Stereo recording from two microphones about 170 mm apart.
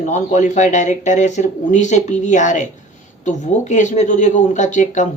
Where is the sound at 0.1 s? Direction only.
45° left (ahead or behind).